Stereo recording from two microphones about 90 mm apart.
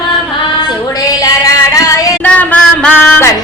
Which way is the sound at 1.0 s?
40° left (ahead or behind).